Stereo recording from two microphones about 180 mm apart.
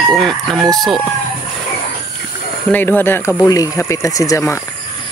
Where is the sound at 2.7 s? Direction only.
10° left (ahead or behind).